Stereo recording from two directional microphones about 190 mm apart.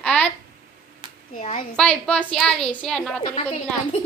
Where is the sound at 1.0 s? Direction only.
25° right (ahead or behind).